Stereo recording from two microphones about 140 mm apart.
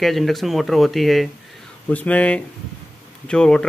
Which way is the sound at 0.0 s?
Centre (ahead or behind).